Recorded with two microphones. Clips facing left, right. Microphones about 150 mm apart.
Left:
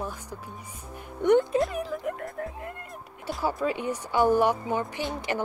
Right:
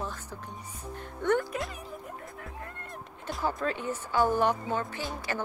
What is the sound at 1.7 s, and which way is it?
Music, 80° left.